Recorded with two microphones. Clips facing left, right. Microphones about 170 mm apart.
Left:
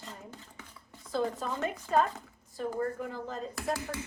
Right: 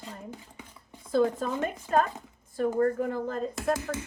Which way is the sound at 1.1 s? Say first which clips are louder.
Right 7 dB; 50° right (ahead or behind).